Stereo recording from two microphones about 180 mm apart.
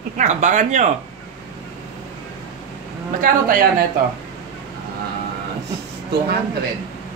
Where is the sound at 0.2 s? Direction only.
40° right (ahead or behind).